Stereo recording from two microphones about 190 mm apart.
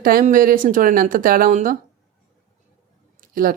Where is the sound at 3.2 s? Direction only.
50° right (ahead or behind).